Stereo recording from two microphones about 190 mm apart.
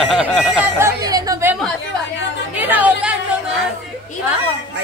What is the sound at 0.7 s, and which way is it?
Chatter, 15° right (ahead or behind).